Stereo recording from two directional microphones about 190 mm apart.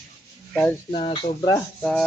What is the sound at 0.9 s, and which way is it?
Speech, 30° left (ahead or behind).